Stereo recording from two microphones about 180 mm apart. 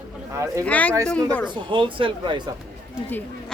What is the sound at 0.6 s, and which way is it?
Speech, 10° left (ahead or behind).